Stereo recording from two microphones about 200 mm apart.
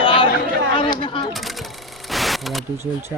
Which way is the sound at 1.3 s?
Centre (ahead or behind).